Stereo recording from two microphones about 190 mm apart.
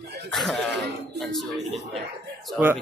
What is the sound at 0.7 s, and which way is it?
Speech, 65° right (ahead or behind).